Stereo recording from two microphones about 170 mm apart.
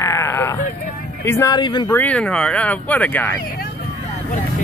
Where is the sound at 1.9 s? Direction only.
10° left (ahead or behind).